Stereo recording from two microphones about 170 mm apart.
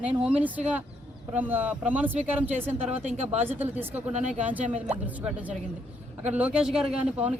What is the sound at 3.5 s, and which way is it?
Speech, 10° right (ahead or behind).